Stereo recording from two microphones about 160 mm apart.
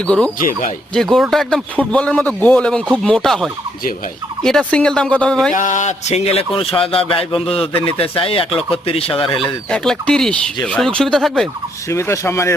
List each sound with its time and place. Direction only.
0.3 s speech: 60° left (ahead or behind)
0.9 s a man's voice: centre (ahead or behind)
5.5 s speech: 50° left (ahead or behind); by 9.3 s 35° left (ahead or behind)
9.3 s speech: 5° left (ahead or behind)
11.9 s a man's voice: 15° left (ahead or behind)